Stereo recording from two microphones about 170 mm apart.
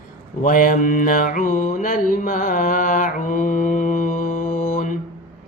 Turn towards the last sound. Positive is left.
turn(degrees=55)  # may be behind; listen again after turning